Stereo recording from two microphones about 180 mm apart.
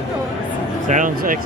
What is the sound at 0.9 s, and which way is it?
Speech, 45° right (ahead or behind).